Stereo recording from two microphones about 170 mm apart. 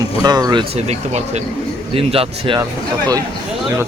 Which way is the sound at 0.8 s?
40° right (ahead or behind).